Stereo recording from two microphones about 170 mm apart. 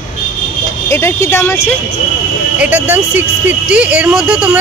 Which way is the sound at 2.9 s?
10° right (ahead or behind).